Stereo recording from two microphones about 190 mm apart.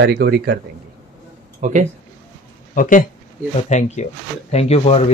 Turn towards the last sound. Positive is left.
turn(degrees=35)  # may be behind; listen again after turning